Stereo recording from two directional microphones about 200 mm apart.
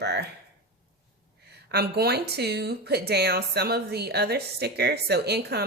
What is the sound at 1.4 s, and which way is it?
Speech, 55° right (ahead or behind).